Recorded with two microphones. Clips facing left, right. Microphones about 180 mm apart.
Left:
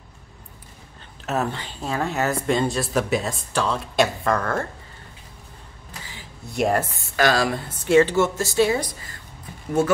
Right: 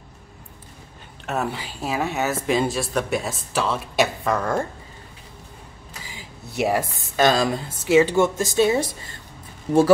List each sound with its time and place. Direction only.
1.2 s a woman's voice: centre (ahead or behind)
1.5 s speech: 10° right (ahead or behind)
6.0 s a sound: 10° right (ahead or behind)
7.2 s a woman's voice: 20° right (ahead or behind)